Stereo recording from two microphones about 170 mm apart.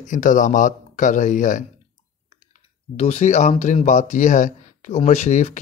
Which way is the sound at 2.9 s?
40° left (ahead or behind).